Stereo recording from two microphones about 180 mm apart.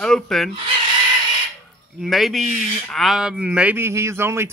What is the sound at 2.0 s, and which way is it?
Speech, centre (ahead or behind).